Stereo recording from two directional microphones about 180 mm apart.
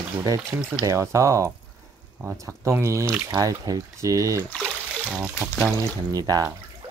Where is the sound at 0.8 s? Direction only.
15° right (ahead or behind).